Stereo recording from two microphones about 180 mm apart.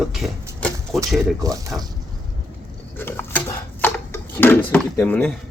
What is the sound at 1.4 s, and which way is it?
Speech, 20° right (ahead or behind).